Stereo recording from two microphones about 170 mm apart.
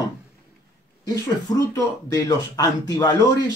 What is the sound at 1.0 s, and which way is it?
Speech, 20° left (ahead or behind).